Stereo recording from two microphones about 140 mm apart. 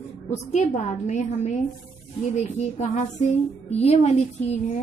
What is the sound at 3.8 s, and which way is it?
Speech, 45° left (ahead or behind).